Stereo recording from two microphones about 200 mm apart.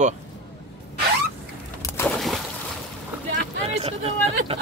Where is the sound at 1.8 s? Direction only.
15° left (ahead or behind).